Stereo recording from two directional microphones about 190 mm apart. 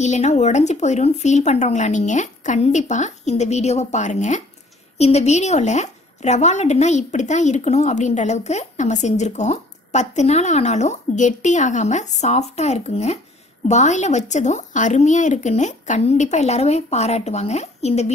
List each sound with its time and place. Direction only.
0.0 s a woman's voice: 40° left (ahead or behind)